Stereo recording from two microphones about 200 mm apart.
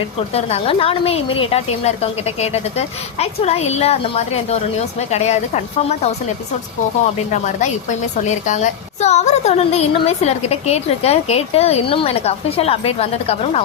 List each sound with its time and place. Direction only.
0.3 s a woman's voice: 30° left (ahead or behind)
7.4 s a woman's voice: 35° left (ahead or behind)